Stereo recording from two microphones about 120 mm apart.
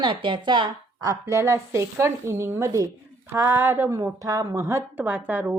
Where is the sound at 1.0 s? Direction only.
25° right (ahead or behind).